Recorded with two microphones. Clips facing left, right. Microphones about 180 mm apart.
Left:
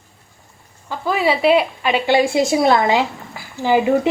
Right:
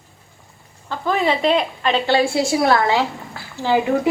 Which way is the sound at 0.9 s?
5° left (ahead or behind).